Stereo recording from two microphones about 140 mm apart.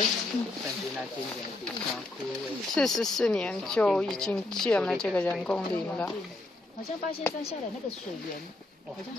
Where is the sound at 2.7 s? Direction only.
5° left (ahead or behind).